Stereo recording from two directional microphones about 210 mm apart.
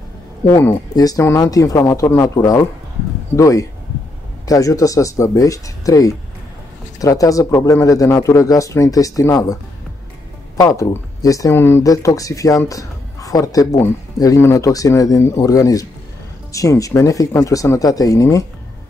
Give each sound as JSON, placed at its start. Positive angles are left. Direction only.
{"t": 0.5, "sound": "speech", "side_deg": 10}
{"t": 10.6, "sound": "speech", "side_deg": 15}